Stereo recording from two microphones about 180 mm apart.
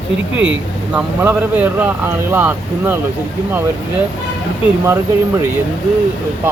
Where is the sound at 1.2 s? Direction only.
10° right (ahead or behind).